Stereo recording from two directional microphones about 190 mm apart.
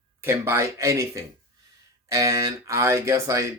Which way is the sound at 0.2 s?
15° right (ahead or behind).